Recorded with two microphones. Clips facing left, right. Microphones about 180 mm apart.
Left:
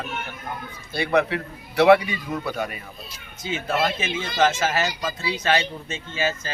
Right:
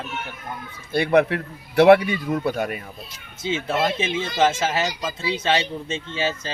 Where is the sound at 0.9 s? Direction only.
55° right (ahead or behind).